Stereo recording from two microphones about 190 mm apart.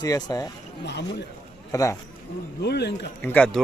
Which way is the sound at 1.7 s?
15° left (ahead or behind).